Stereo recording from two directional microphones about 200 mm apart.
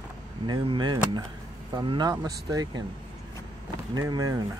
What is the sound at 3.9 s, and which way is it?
Speech, 20° right (ahead or behind).